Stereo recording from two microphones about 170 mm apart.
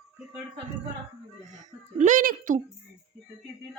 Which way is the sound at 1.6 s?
45° right (ahead or behind).